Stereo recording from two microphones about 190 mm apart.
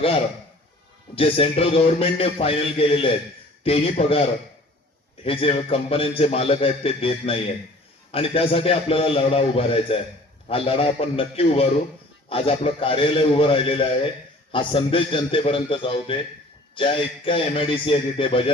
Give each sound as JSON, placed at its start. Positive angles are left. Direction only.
{"t": 1.1, "sound": "a man's voice", "side_deg": 30}